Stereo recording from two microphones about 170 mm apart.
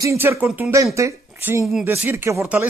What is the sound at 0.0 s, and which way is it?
Speech, 15° right (ahead or behind).